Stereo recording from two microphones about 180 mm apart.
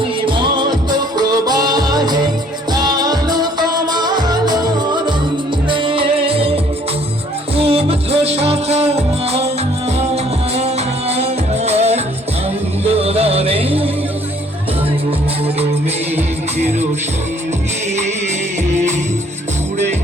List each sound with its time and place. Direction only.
0.3 s music: 25° right (ahead or behind)
7.5 s music: 35° right (ahead or behind)
11.1 s music: 35° right (ahead or behind)
16.1 s music: 40° right (ahead or behind)
18.7 s music: 40° right (ahead or behind)